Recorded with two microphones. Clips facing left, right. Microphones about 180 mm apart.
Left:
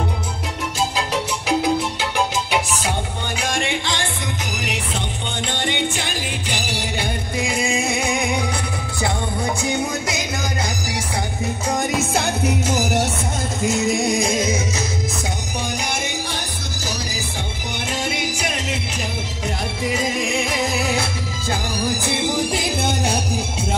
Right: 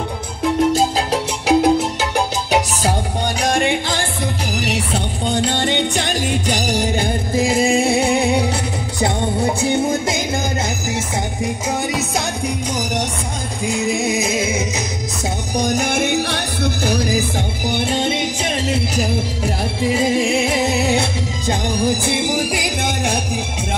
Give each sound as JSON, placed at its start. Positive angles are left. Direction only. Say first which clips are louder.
{"t": 0.7, "sound": "music", "louder": "right 5 dB", "side_deg": -40}
{"t": 5.3, "sound": "music", "louder": "right 7 dB", "side_deg": -40}
{"t": 11.9, "sound": "music", "louder": "left 1 dB", "side_deg": 5}
{"t": 15.5, "sound": "music", "louder": "right 10 dB", "side_deg": -45}
{"t": 17.6, "sound": "music", "louder": "right 7 dB", "side_deg": -35}
{"t": 19.9, "sound": "music", "louder": "right 6 dB", "side_deg": -30}
{"t": 21.8, "sound": "music", "louder": "right 4 dB", "side_deg": -15}